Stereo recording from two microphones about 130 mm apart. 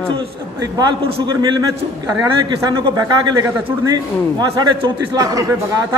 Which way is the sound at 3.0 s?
30° right (ahead or behind).